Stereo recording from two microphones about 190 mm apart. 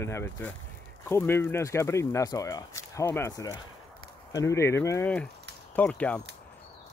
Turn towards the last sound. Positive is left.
turn(degrees=5)  # may be behind; listen again after turning